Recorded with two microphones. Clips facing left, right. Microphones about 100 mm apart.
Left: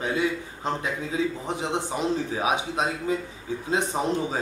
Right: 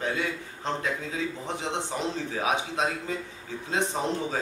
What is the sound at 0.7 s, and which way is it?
A man's voice, 10° left (ahead or behind).